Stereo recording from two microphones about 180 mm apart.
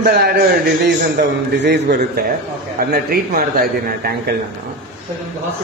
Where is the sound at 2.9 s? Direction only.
55° right (ahead or behind).